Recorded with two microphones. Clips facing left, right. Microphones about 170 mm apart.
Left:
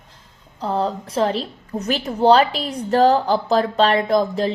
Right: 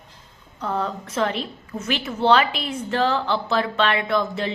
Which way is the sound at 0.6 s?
30° left (ahead or behind).